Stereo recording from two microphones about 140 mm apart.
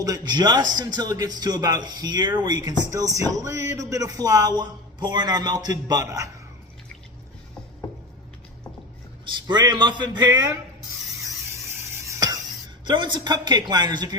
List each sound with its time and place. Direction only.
0.0 s speech: 30° right (ahead or behind)
9.2 s speech: 30° right (ahead or behind)
12.0 s a sound: 25° right (ahead or behind)
12.8 s speech: 35° right (ahead or behind)